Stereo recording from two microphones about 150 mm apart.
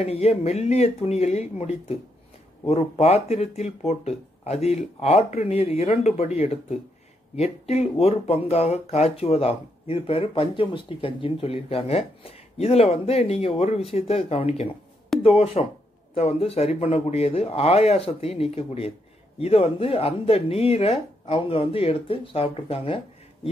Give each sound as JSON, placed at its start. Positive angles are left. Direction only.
{"t": 0.0, "sound": "speech", "side_deg": 45}